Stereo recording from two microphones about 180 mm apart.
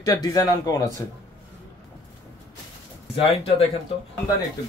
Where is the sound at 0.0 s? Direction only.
20° left (ahead or behind).